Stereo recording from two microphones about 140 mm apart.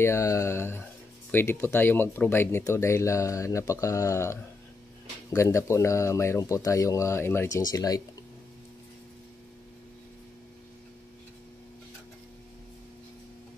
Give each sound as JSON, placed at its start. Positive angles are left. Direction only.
{"t": 0.0, "sound": "speech", "side_deg": 20}